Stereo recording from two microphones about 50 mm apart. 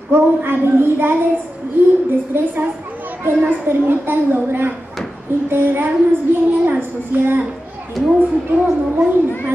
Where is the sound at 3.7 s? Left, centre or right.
Right.